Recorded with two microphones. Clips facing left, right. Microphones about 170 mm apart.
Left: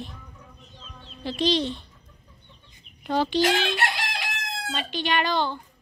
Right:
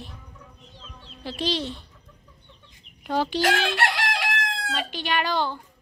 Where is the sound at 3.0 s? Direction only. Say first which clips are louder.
Left 1 dB; 10° right (ahead or behind).